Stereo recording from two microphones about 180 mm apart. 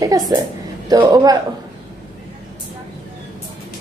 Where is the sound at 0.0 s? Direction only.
20° right (ahead or behind).